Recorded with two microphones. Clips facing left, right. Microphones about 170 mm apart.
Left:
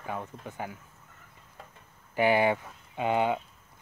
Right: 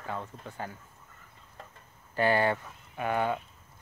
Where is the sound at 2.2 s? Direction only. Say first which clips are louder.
Left 2 dB; 15° left (ahead or behind).